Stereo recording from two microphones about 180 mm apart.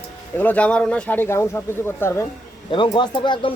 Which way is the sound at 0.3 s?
10° left (ahead or behind).